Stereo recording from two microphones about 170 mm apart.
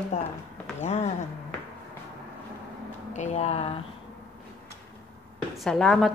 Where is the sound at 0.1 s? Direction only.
35° left (ahead or behind).